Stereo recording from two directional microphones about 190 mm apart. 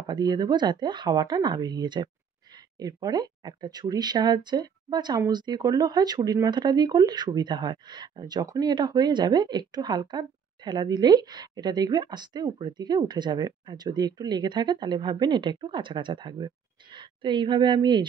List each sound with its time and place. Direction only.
0.0 s speech: 25° right (ahead or behind)